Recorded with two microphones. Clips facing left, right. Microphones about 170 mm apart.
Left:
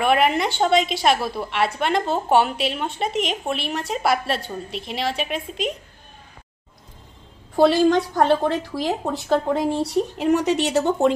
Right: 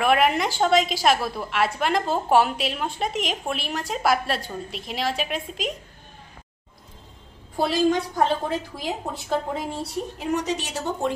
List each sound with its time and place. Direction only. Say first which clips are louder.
0.0 s a woman's voice: left 1 dB; centre (ahead or behind)
7.5 s a woman's voice: left 5 dB; 70° left (ahead or behind)